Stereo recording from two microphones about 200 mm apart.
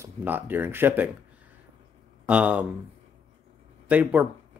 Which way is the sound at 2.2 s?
5° right (ahead or behind).